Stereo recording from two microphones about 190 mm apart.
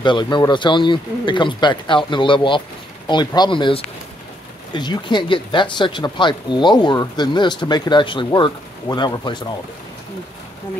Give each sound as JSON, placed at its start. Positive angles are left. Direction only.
{"t": 0.0, "sound": "speech", "side_deg": 25}